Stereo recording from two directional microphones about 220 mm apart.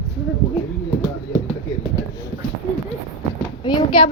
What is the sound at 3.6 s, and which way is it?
Clip-clop, 20° left (ahead or behind).